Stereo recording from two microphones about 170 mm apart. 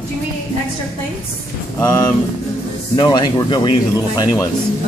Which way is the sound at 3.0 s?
25° left (ahead or behind).